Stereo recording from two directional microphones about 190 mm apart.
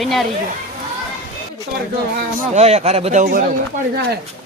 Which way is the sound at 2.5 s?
35° right (ahead or behind).